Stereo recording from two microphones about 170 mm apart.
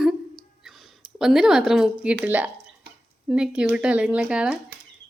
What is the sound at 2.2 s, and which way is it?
A woman's voice, 10° right (ahead or behind).